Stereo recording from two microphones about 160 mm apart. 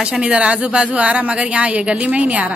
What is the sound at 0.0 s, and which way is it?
A woman's voice, 5° right (ahead or behind).